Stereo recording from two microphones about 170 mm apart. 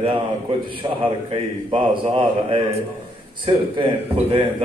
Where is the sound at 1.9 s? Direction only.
30° right (ahead or behind).